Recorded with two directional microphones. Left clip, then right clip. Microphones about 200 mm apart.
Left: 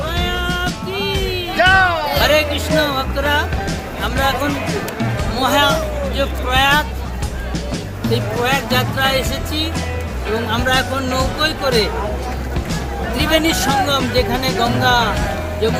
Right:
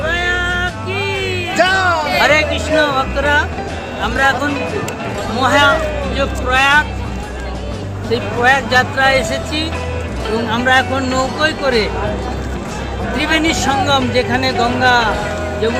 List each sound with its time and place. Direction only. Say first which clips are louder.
0.1 s music: right 6 dB; 5° left (ahead or behind)
1.5 s music: left 1 dB; 50° right (ahead or behind)
2.2 s speech: right 1 dB; 5° left (ahead or behind)
8.1 s speech: right 5 dB; 5° left (ahead or behind)
13.1 s speech: right 1 dB; 5° left (ahead or behind)